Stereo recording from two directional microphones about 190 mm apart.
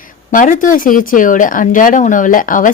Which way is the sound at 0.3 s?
45° left (ahead or behind).